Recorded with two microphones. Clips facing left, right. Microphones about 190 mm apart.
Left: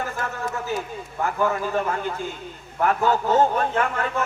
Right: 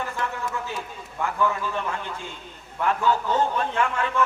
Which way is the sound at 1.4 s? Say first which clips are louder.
Left 3 dB; 45° left (ahead or behind).